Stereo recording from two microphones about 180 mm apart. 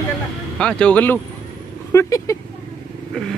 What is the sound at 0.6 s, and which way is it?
Speech, 5° left (ahead or behind).